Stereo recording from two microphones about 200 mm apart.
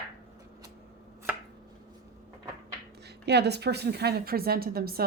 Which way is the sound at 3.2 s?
55° right (ahead or behind).